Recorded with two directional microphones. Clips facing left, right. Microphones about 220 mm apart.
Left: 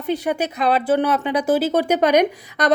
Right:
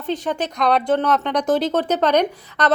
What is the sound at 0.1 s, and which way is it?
Speech, 10° left (ahead or behind).